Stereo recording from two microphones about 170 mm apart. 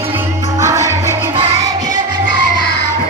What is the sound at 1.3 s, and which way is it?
Music, 35° right (ahead or behind).